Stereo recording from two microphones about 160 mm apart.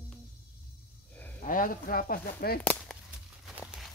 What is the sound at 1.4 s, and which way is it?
Speech, 55° left (ahead or behind).